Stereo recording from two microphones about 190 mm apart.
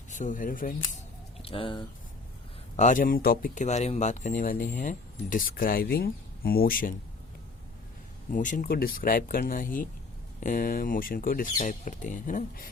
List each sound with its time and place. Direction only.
0.1 s speech: 40° left (ahead or behind)
1.4 s speech: 30° left (ahead or behind)
2.7 s speech: 40° left (ahead or behind)
8.3 s speech: 45° left (ahead or behind)